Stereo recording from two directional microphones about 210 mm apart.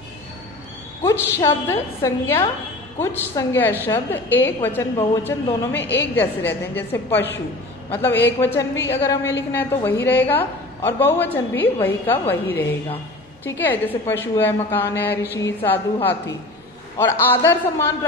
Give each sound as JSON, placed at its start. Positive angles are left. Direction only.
{"t": 1.0, "sound": "a woman's voice", "side_deg": 15}
{"t": 5.8, "sound": "a woman's voice", "side_deg": 55}
{"t": 6.1, "sound": "a woman's voice", "side_deg": 10}